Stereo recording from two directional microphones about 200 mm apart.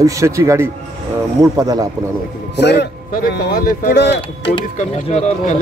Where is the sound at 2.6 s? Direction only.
55° left (ahead or behind).